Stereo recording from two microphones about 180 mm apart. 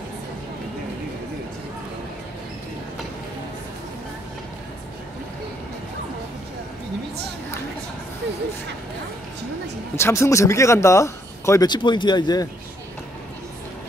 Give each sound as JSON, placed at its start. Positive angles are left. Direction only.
{"t": 9.9, "sound": "speech", "side_deg": 15}